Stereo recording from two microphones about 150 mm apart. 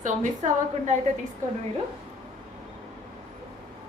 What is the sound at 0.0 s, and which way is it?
Speech, 55° right (ahead or behind).